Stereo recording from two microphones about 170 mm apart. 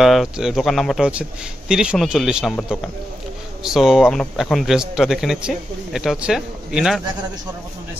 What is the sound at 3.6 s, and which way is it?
Speech, centre (ahead or behind).